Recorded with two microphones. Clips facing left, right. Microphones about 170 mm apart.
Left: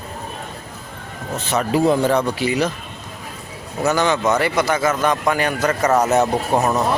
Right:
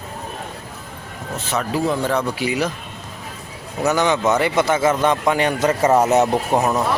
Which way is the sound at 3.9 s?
15° right (ahead or behind).